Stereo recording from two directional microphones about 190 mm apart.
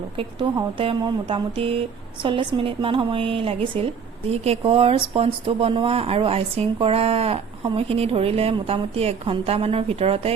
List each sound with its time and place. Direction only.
0.2 s a woman's voice: 25° right (ahead or behind)